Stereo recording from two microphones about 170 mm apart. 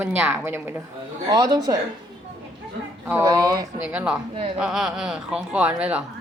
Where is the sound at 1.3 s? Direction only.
20° right (ahead or behind).